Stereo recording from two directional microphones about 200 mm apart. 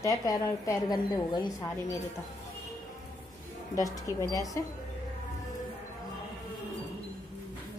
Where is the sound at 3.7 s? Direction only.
15° left (ahead or behind).